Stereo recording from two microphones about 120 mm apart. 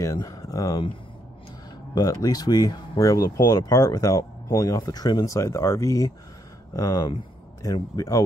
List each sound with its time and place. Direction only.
0.0 s speech: 30° left (ahead or behind)
2.0 s speech: 30° left (ahead or behind)